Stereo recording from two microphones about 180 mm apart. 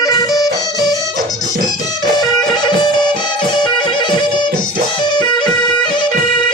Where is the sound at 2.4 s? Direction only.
25° left (ahead or behind).